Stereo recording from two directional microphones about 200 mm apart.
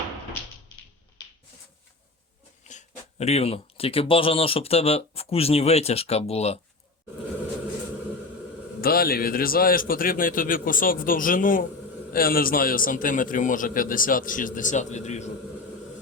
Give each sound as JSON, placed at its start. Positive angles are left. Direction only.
{"t": 2.6, "sound": "speech", "side_deg": 35}
{"t": 8.8, "sound": "a man's voice", "side_deg": 50}